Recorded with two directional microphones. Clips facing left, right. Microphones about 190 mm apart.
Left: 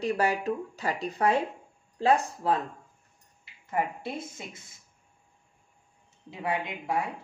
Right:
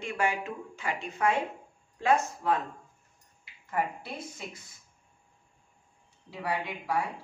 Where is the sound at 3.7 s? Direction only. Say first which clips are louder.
Left 2 dB; 25° left (ahead or behind).